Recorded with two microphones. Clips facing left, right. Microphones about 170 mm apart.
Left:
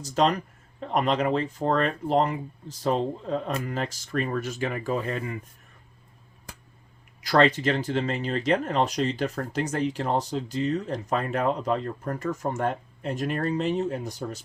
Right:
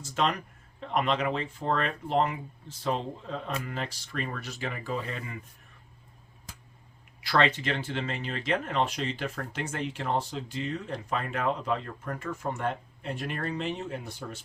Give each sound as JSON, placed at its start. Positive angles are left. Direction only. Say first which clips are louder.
{"t": 0.0, "sound": "speech", "louder": "left 5 dB", "side_deg": 35}
{"t": 7.2, "sound": "speech", "louder": "left 5 dB", "side_deg": 40}